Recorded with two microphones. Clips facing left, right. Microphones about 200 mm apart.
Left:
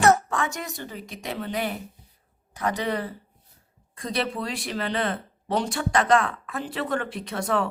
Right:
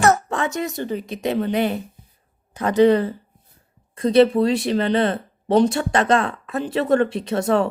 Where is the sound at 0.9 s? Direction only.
20° right (ahead or behind).